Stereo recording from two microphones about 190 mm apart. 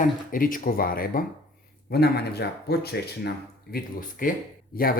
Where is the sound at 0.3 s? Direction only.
45° left (ahead or behind).